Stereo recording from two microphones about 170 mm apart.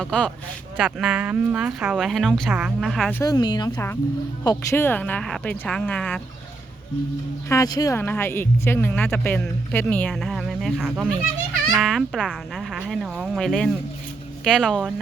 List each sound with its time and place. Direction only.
0.0 s speech: 5° left (ahead or behind)
3.2 s speech: 25° left (ahead or behind); by 6.1 s 10° left (ahead or behind)
7.5 s speech: 20° left (ahead or behind); by 14.9 s centre (ahead or behind)